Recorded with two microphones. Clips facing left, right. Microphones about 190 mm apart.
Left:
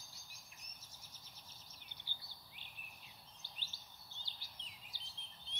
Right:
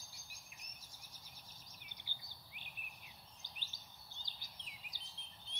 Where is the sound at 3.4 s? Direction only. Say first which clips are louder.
Even; 15° right (ahead or behind).